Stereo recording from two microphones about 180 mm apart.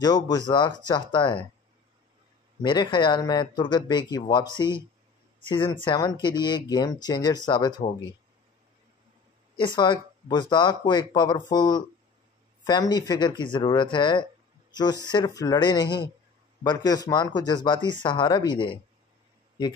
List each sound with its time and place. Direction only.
0.0 s speech: 20° left (ahead or behind)
2.6 s speech: 25° left (ahead or behind)
5.5 s speech: 25° left (ahead or behind)
9.8 s speech: 25° left (ahead or behind)